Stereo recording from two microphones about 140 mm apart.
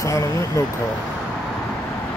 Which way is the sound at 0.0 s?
20° left (ahead or behind).